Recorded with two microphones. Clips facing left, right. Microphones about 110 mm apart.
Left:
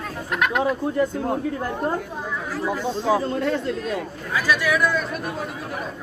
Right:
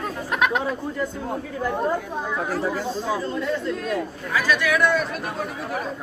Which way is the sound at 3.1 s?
50° left (ahead or behind).